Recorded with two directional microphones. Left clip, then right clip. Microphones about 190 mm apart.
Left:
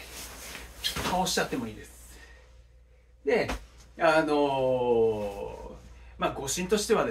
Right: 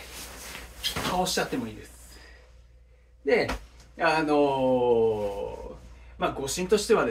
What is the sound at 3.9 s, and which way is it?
Speech, 20° left (ahead or behind).